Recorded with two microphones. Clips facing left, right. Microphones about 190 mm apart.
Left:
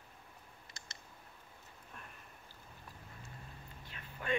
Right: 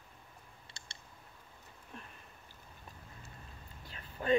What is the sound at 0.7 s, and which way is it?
Clicking, 30° right (ahead or behind).